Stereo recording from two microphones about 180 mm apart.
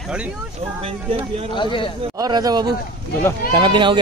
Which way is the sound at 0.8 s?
30° right (ahead or behind).